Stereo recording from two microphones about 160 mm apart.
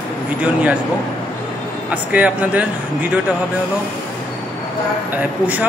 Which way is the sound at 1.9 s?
10° right (ahead or behind).